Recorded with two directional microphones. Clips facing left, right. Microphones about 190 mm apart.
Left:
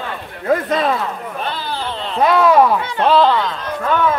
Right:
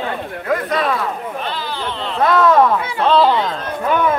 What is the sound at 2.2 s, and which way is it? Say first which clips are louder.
Speech: left 1 dB; 15° left (ahead or behind).